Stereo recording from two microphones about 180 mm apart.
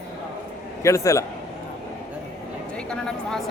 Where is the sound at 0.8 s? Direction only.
15° left (ahead or behind).